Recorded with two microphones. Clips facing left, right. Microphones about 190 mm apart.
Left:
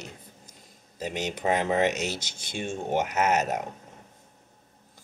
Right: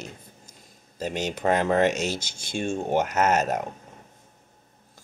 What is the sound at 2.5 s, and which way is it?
Speech, 45° right (ahead or behind).